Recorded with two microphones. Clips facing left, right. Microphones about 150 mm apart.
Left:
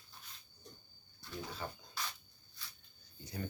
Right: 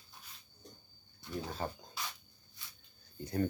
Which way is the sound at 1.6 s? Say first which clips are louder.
Right 6 dB; 40° right (ahead or behind).